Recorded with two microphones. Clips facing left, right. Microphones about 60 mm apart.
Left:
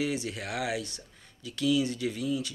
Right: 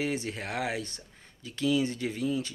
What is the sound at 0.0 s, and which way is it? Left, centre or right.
Speech, right.